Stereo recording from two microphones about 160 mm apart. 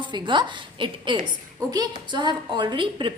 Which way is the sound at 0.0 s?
30° right (ahead or behind).